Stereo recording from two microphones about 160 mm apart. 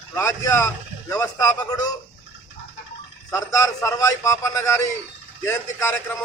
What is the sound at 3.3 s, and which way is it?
A man's voice, 20° left (ahead or behind).